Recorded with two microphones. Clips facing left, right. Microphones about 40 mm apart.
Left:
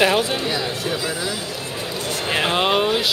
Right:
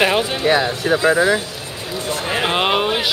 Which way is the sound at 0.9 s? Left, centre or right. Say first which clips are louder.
Right 10 dB; right.